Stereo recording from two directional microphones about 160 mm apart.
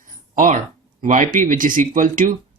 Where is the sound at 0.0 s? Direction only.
55° right (ahead or behind).